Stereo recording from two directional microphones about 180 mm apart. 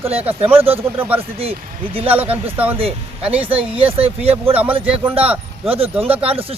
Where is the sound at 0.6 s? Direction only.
30° right (ahead or behind).